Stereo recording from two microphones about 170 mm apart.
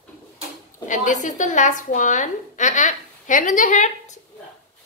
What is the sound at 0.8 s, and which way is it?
A woman's voice, 45° left (ahead or behind).